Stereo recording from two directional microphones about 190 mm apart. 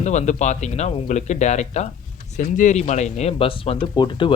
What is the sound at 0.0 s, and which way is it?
Speech, 40° left (ahead or behind).